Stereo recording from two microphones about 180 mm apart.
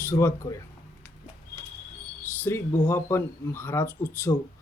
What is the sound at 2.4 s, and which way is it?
Speech, 15° left (ahead or behind).